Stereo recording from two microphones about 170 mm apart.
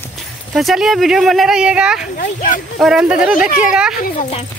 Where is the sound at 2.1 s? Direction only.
55° left (ahead or behind).